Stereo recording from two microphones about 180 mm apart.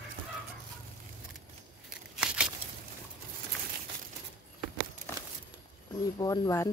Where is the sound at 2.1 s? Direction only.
5° right (ahead or behind).